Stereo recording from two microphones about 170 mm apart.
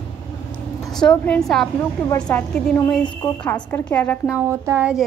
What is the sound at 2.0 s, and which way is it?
Speech, 20° left (ahead or behind).